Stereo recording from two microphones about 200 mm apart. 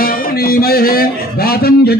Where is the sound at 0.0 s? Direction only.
45° left (ahead or behind).